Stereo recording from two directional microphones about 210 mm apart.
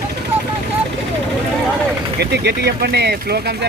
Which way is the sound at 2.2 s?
50° right (ahead or behind).